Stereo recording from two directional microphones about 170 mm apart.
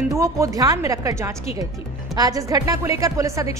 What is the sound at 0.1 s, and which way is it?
A woman's voice, 20° right (ahead or behind).